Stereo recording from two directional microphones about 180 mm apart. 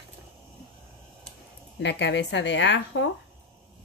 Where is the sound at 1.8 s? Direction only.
75° left (ahead or behind).